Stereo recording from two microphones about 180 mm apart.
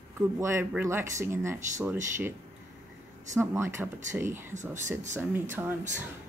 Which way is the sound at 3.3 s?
15° right (ahead or behind).